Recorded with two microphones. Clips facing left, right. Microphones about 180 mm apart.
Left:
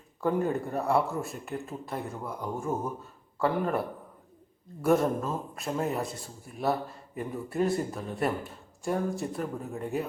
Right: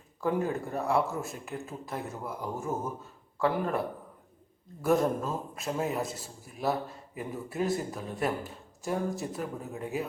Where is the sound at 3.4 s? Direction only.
Centre (ahead or behind).